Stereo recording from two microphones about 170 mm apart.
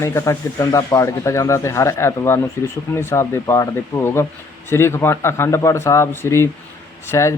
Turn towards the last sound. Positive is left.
turn(degrees=15)  # may be behind; listen again after turning